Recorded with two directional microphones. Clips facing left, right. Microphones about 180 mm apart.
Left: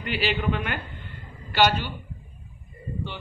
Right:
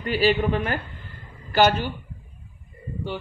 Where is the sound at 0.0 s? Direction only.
40° right (ahead or behind).